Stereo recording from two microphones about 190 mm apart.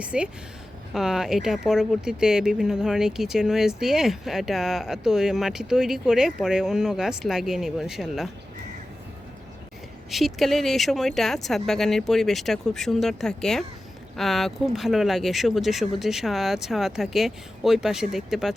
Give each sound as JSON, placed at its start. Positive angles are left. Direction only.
{"t": 0.0, "sound": "speech", "side_deg": -5}
{"t": 10.1, "sound": "speech", "side_deg": 0}